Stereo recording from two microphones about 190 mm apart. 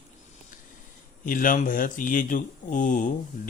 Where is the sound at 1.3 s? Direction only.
45° left (ahead or behind).